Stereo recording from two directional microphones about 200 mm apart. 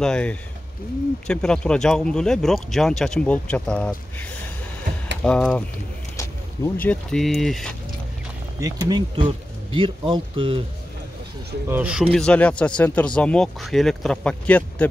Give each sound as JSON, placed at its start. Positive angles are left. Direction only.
{"t": 0.0, "sound": "speech", "side_deg": 5}
{"t": 8.5, "sound": "speech", "side_deg": -20}
{"t": 11.7, "sound": "speech", "side_deg": -5}